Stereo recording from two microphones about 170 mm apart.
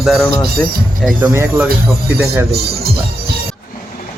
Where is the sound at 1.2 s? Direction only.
15° right (ahead or behind).